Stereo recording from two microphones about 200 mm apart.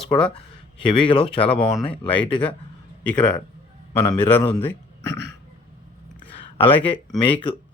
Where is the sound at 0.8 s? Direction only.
25° left (ahead or behind).